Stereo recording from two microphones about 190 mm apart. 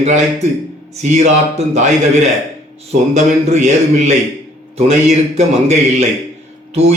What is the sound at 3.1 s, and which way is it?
A man's voice, 35° right (ahead or behind).